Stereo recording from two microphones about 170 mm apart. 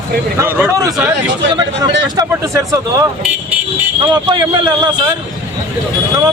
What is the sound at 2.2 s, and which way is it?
Speech, 15° right (ahead or behind).